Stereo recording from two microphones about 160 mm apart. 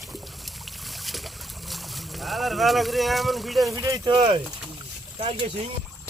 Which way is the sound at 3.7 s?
20° right (ahead or behind).